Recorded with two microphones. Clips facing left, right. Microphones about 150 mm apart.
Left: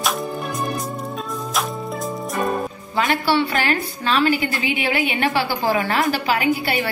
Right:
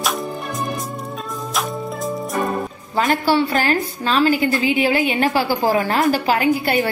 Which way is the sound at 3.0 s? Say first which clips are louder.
Right 2 dB; 40° right (ahead or behind).